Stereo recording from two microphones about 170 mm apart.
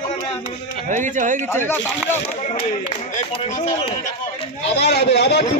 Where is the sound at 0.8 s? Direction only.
50° right (ahead or behind).